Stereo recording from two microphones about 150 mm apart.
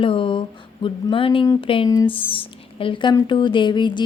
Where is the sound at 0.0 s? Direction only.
35° left (ahead or behind).